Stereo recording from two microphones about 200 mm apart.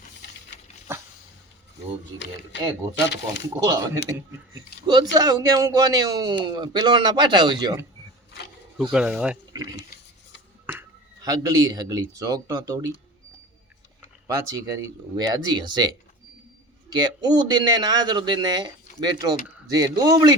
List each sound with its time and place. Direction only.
0.9 s dog: 10° right (ahead or behind)
2.1 s speech: 60° left (ahead or behind)
3.5 s a man's voice: 20° right (ahead or behind)
8.9 s speech: 5° right (ahead or behind)
9.5 s speech: 20° right (ahead or behind)
15.1 s a man's voice: 20° right (ahead or behind)